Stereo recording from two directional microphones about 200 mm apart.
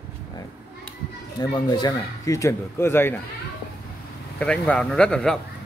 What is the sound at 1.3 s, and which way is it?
Speech, 20° left (ahead or behind).